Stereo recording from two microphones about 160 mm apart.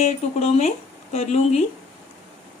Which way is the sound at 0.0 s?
45° left (ahead or behind).